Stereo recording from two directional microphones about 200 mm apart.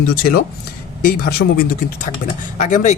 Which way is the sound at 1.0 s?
50° left (ahead or behind).